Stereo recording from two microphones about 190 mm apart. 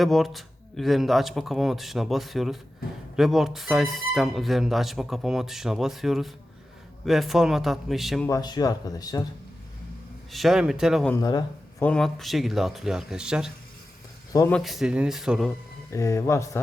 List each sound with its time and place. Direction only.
0.0 s speech: centre (ahead or behind)
8.3 s speech: 20° left (ahead or behind)
10.3 s speech: centre (ahead or behind)
11.1 s speech: 20° left (ahead or behind)
11.9 s speech: 5° left (ahead or behind)
14.3 s speech: 10° left (ahead or behind)
14.6 s speech: centre (ahead or behind)
15.9 s speech: 15° left (ahead or behind)